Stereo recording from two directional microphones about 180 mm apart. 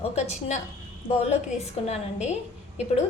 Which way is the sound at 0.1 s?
40° left (ahead or behind).